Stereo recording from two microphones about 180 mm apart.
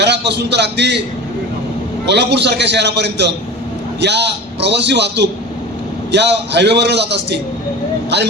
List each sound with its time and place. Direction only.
0.0 s a man's voice: 70° right (ahead or behind)
2.0 s a man's voice: 70° right (ahead or behind)